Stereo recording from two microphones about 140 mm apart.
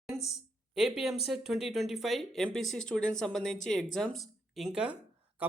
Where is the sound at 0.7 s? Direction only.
5° right (ahead or behind).